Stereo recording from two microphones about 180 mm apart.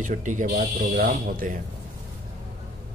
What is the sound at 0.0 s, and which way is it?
Speech, 45° right (ahead or behind).